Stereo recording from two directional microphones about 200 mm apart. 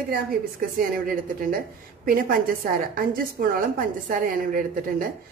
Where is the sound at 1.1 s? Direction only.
45° right (ahead or behind).